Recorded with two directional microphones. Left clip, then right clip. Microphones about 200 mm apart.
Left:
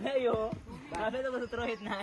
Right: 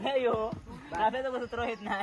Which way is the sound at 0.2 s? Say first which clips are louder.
Even; 25° right (ahead or behind).